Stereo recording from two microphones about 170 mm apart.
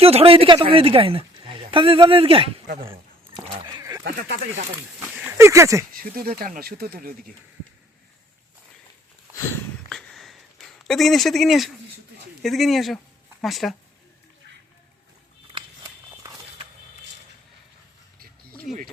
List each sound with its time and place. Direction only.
0.0 s a woman's voice: 35° right (ahead or behind)
3.7 s a sound: 20° right (ahead or behind)
4.0 s speech: 75° right (ahead or behind)
5.1 s a sound: 5° right (ahead or behind)
5.5 s speech: 15° right (ahead or behind)
5.9 s speech: 60° right (ahead or behind)
9.9 s a sound: centre (ahead or behind)
12.4 s speech: centre (ahead or behind)
18.7 s speech: centre (ahead or behind)